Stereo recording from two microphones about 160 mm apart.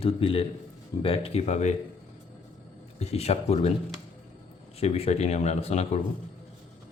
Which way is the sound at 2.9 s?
40° left (ahead or behind).